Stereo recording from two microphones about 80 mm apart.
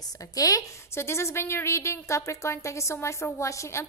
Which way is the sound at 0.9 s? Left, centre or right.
Left.